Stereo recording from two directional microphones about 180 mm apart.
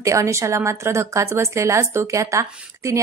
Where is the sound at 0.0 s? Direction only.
15° right (ahead or behind).